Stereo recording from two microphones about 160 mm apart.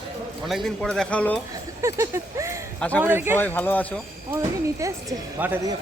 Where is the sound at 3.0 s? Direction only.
15° right (ahead or behind).